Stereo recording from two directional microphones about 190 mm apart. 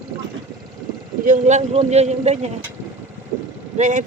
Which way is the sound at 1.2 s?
40° right (ahead or behind).